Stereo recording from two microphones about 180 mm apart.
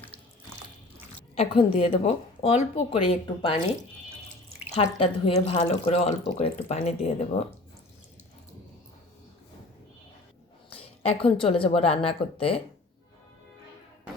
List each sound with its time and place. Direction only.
1.4 s speech: 35° left (ahead or behind)
10.7 s a woman's voice: 30° left (ahead or behind)